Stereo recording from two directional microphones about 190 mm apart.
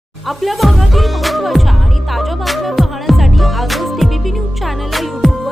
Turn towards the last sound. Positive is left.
turn(degrees=0)  # may be behind; listen again after turning